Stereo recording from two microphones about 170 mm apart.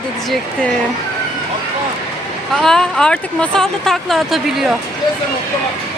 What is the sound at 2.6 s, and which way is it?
Speech, 5° left (ahead or behind).